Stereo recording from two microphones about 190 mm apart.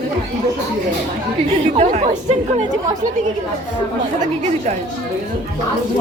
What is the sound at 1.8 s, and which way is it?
Speech, 40° right (ahead or behind).